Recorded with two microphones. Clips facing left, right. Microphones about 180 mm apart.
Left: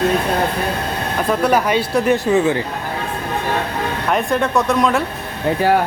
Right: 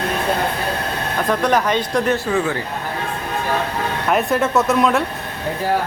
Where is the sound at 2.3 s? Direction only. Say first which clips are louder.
Left 5 dB; 20° left (ahead or behind).